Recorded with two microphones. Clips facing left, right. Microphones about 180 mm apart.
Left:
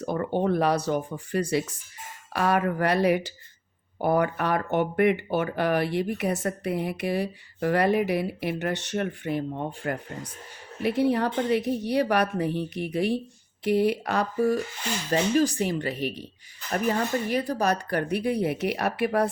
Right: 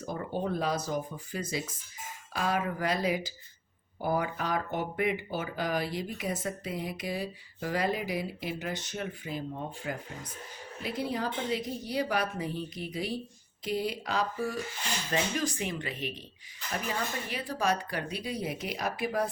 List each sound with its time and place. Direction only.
0.0 s speech: 65° left (ahead or behind)
14.3 s speech: 45° left (ahead or behind)
18.1 s speech: 60° left (ahead or behind)